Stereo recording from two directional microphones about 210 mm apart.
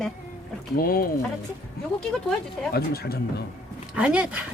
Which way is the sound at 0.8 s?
45° left (ahead or behind).